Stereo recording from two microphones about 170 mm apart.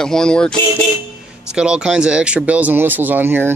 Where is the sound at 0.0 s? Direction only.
5° left (ahead or behind).